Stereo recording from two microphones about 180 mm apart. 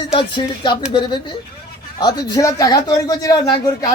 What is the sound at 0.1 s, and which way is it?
A man's voice, 25° left (ahead or behind).